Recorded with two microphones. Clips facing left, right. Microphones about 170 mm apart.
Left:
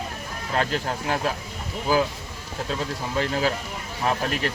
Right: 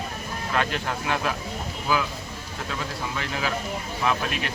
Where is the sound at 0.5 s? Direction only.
35° left (ahead or behind).